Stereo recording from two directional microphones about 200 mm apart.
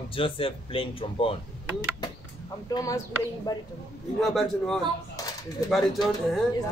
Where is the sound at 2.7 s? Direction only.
15° left (ahead or behind).